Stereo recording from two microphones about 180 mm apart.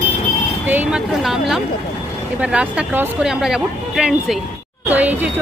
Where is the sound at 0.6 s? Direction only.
5° right (ahead or behind).